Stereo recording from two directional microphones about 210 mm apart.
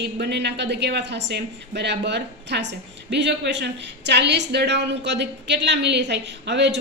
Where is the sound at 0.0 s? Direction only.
55° right (ahead or behind).